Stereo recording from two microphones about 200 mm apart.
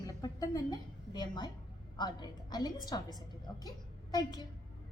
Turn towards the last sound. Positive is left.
turn(degrees=20)  # may be behind; listen again after turning